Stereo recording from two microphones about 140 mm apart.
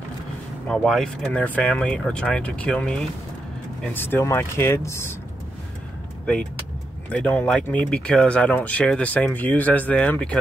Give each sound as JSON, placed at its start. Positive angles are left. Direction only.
{"t": 0.7, "sound": "speech", "side_deg": 5}
{"t": 7.1, "sound": "speech", "side_deg": 10}